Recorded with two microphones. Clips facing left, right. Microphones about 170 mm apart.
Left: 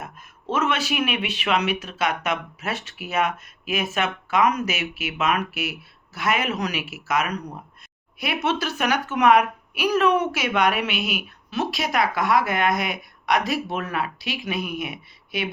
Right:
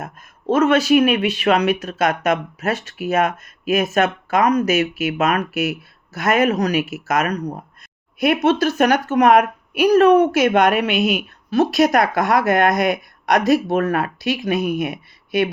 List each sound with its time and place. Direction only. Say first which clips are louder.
0.0 s speech: right 7 dB; 40° right (ahead or behind)